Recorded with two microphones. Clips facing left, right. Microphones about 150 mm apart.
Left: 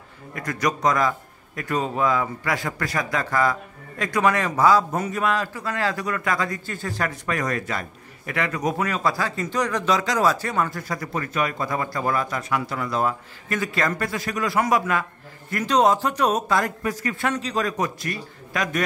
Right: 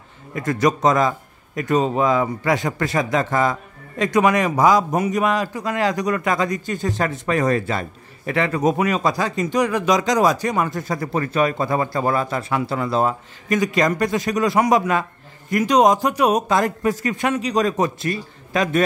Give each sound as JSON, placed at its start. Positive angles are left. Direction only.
{"t": 0.3, "sound": "speech", "side_deg": -25}
{"t": 8.7, "sound": "speech", "side_deg": -15}